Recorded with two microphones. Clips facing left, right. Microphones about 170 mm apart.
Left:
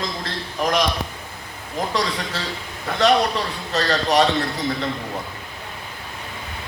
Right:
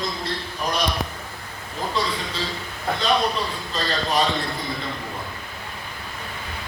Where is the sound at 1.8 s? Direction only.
80° left.